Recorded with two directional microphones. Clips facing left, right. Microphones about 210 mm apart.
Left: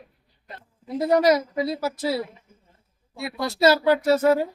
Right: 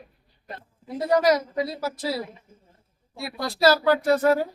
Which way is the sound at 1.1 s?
25° left (ahead or behind).